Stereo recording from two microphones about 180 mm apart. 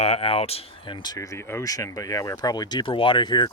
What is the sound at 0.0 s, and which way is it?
Speech, 35° left (ahead or behind).